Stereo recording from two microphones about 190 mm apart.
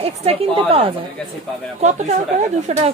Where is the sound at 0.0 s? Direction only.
30° right (ahead or behind).